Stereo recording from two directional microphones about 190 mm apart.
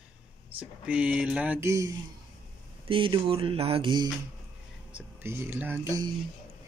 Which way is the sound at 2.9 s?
25° right (ahead or behind).